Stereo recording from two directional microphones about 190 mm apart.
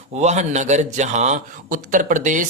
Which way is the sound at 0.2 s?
35° right (ahead or behind).